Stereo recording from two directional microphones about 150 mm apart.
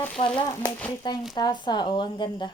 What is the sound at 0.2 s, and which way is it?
Speech, 40° left (ahead or behind).